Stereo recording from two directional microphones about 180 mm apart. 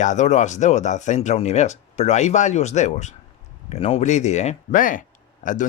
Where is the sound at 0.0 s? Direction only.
40° left (ahead or behind).